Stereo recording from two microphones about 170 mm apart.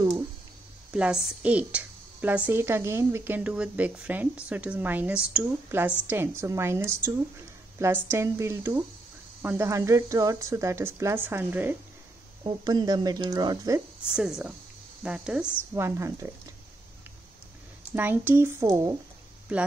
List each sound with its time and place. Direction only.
0.9 s a woman's voice: 5° right (ahead or behind)
12.4 s speech: 25° right (ahead or behind)
14.1 s a woman's voice: 5° right (ahead or behind)
15.7 s a woman's voice: 20° right (ahead or behind)
17.9 s a woman's voice: 10° right (ahead or behind)
19.5 s a woman's voice: 10° right (ahead or behind)